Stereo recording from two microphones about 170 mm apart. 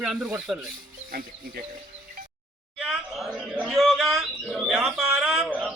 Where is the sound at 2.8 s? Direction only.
Centre (ahead or behind).